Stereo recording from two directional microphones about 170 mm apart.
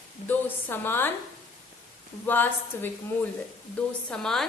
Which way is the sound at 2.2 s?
10° left (ahead or behind).